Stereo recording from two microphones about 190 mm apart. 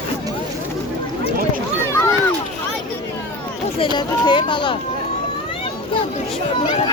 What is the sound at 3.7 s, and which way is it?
Speech, 25° left (ahead or behind).